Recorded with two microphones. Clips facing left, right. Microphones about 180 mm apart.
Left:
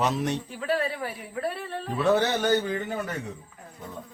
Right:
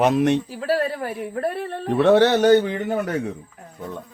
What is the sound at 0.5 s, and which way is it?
A man's voice, 40° right (ahead or behind).